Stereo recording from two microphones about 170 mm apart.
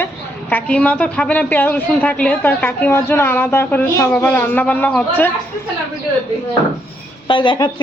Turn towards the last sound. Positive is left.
turn(degrees=25)  # may be behind; listen again after turning